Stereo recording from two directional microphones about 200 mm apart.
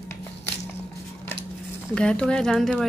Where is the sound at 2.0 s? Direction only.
5° left (ahead or behind).